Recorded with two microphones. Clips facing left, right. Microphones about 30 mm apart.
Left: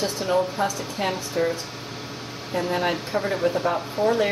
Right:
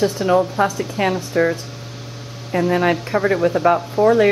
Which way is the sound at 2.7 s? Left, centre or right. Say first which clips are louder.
Right 6 dB; right.